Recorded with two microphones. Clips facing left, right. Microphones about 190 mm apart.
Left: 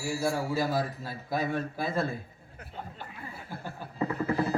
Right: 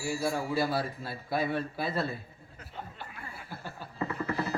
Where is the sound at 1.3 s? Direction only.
45° left (ahead or behind).